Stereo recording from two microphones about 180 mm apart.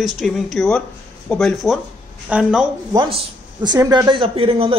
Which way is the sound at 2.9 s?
25° right (ahead or behind).